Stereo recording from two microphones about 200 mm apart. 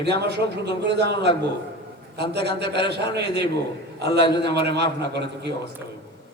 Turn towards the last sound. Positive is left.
turn(degrees=-55)  # may be behind; listen again after turning